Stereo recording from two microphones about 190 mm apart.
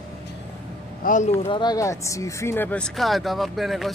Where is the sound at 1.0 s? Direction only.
40° left (ahead or behind).